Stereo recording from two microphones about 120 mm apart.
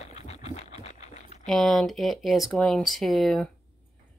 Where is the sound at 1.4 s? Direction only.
Centre (ahead or behind).